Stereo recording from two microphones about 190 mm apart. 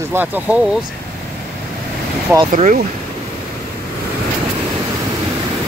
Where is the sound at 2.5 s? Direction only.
45° right (ahead or behind).